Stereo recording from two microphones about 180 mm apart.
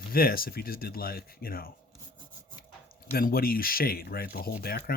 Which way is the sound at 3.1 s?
55° left (ahead or behind).